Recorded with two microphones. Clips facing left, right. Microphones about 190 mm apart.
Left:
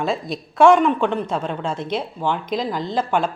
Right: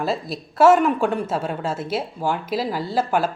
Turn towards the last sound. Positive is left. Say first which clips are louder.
# even
turn(degrees=-5)  # may be behind; listen again after turning